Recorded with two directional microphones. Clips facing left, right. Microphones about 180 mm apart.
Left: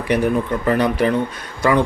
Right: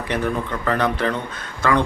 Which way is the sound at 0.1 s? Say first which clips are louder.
Left 6 dB; 15° left (ahead or behind).